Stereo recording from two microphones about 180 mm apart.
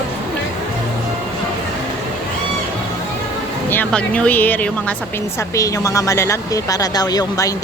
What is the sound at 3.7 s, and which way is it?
Speech, 10° left (ahead or behind).